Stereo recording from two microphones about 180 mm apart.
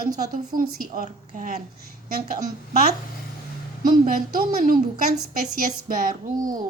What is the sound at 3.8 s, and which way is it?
A woman's voice, 50° right (ahead or behind).